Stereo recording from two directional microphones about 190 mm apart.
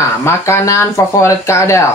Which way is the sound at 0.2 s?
15° left (ahead or behind).